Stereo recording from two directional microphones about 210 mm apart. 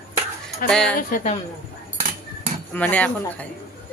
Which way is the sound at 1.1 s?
35° left (ahead or behind).